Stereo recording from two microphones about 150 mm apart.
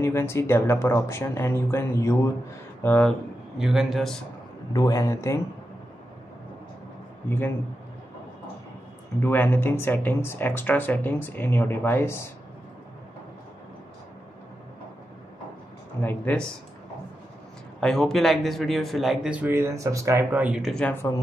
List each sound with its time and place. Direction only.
0.0 s speech: 15° left (ahead or behind); by 4.2 s centre (ahead or behind)
4.7 s speech: 25° left (ahead or behind)
7.2 s speech: 15° left (ahead or behind)
9.2 s speech: 15° left (ahead or behind)
16.0 s speech: 10° left (ahead or behind)
17.7 s speech: 5° left (ahead or behind)
19.4 s speech: 15° right (ahead or behind)
20.7 s speech: 10° left (ahead or behind)